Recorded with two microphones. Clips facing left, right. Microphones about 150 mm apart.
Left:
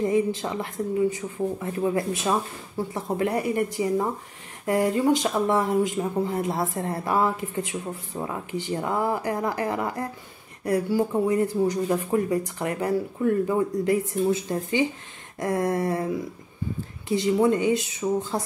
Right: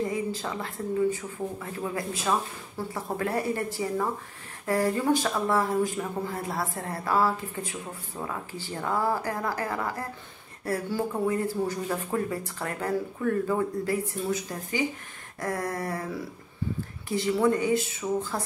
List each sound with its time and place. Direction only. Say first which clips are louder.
0.1 s speech: left 7 dB; 20° left (ahead or behind)
17.1 s speech: left 3 dB; 20° left (ahead or behind)